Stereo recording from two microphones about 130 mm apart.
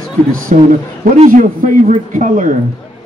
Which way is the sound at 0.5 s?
75° right (ahead or behind).